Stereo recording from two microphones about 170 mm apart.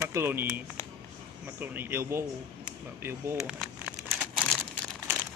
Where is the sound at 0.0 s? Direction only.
15° right (ahead or behind).